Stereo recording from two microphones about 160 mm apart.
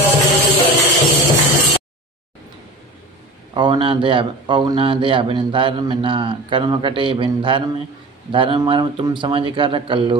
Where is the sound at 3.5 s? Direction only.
30° right (ahead or behind).